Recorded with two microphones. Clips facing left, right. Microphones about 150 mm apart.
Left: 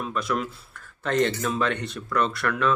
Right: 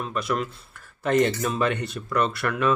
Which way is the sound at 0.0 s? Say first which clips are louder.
Even; centre (ahead or behind).